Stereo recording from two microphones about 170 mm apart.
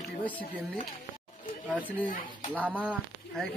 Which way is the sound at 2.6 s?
10° right (ahead or behind).